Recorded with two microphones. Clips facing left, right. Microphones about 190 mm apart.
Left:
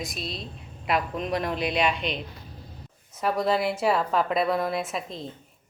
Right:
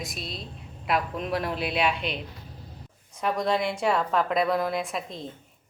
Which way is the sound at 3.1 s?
5° left (ahead or behind).